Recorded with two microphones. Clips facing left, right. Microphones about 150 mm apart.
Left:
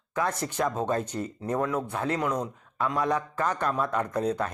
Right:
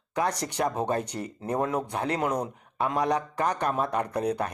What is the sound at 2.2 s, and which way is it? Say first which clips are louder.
Speech: right 1 dB; 30° right (ahead or behind).